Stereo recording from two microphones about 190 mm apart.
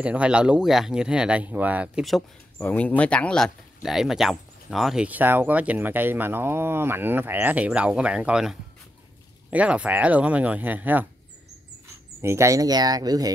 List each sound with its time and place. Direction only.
0.0 s speech: 5° right (ahead or behind)
12.2 s speech: 15° right (ahead or behind)